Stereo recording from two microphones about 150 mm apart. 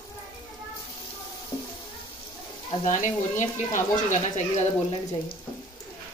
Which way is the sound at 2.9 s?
55° left (ahead or behind).